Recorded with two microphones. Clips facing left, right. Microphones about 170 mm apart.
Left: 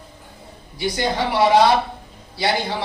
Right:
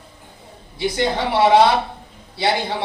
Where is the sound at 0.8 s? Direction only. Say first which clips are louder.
Right 1 dB; 25° right (ahead or behind).